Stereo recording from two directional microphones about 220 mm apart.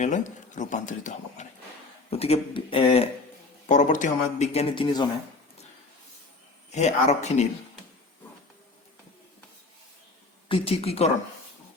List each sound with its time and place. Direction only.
0.0 s a man's voice: 35° left (ahead or behind)
6.7 s speech: 30° left (ahead or behind)
10.5 s a man's voice: 25° left (ahead or behind)